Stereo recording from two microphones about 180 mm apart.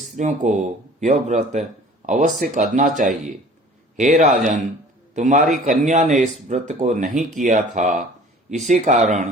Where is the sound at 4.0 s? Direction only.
45° right (ahead or behind).